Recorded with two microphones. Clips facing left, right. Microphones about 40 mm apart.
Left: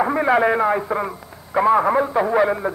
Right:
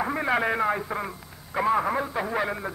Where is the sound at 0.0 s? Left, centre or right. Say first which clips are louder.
Left 8 dB; centre.